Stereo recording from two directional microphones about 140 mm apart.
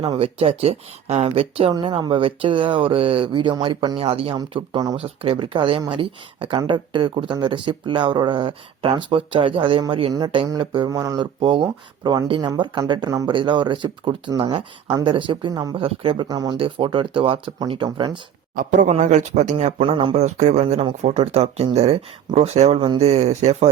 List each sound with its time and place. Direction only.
0.0 s speech: 40° right (ahead or behind)
18.5 s a man's voice: 90° right
18.9 s speech: 60° right (ahead or behind)
19.9 s speech: 40° right (ahead or behind)
20.1 s speech: 55° right (ahead or behind)